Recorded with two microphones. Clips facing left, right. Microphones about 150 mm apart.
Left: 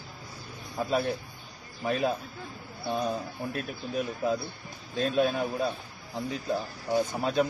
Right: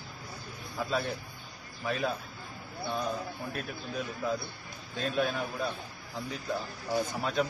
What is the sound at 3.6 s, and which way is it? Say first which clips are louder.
A man's voice: left 6 dB; 20° left (ahead or behind).